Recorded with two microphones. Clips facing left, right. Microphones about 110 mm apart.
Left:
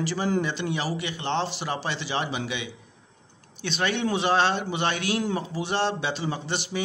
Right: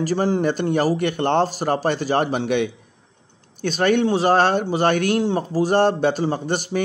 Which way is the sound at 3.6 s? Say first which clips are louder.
Right 8 dB; 45° right (ahead or behind).